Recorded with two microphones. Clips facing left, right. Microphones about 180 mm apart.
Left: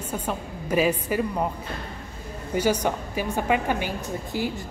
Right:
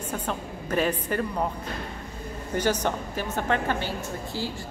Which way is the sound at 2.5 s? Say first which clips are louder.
Left 2 dB; 10° left (ahead or behind).